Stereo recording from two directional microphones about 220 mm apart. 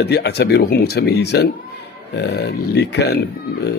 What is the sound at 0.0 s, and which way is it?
Speech, 45° left (ahead or behind).